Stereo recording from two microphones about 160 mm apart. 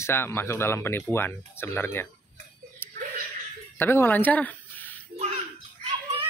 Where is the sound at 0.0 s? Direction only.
15° left (ahead or behind).